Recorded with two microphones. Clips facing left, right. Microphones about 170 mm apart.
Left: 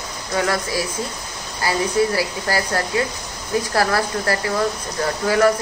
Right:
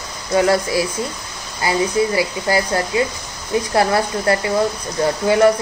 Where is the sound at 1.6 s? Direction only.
15° right (ahead or behind).